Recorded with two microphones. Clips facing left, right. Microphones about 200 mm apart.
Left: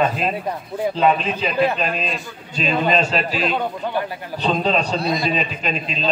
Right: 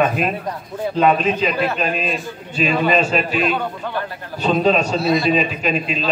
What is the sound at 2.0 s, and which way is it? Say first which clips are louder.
A man's voice: right 3 dB; 5° right (ahead or behind).